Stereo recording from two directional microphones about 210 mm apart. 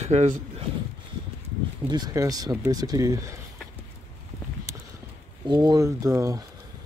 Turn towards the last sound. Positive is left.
turn(degrees=-15)  # may be behind; listen again after turning